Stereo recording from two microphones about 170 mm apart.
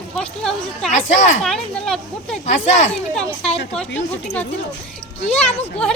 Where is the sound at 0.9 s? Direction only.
45° left (ahead or behind).